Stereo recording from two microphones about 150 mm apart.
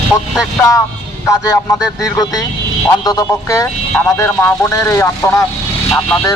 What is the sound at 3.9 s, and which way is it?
Speech, 15° left (ahead or behind).